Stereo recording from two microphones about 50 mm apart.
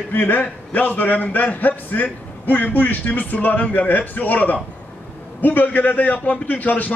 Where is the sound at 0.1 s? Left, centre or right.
Left.